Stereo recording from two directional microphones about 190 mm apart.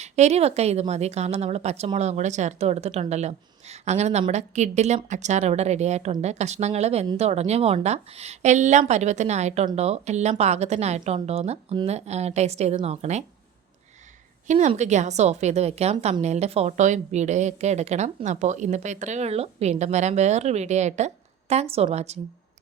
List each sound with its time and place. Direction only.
0.0 s a woman's voice: 35° right (ahead or behind)
14.4 s a woman's voice: 40° right (ahead or behind)